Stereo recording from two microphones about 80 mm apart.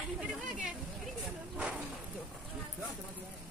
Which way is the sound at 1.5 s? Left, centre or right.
Centre.